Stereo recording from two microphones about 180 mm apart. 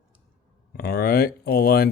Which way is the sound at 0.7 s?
60° left (ahead or behind).